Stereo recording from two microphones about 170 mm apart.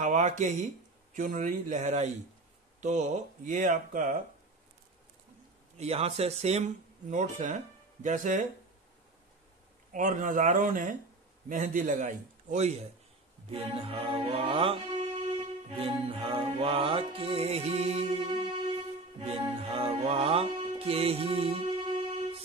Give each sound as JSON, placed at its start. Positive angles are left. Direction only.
{"t": 0.0, "sound": "speech", "side_deg": -45}
{"t": 5.8, "sound": "speech", "side_deg": -35}
{"t": 9.9, "sound": "speech", "side_deg": -50}
{"t": 13.5, "sound": "music", "side_deg": -35}
{"t": 18.2, "sound": "music", "side_deg": -25}